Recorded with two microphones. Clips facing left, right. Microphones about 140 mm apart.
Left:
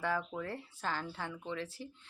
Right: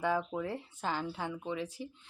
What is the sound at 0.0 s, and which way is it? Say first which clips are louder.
Speech: right 4 dB; 20° right (ahead or behind).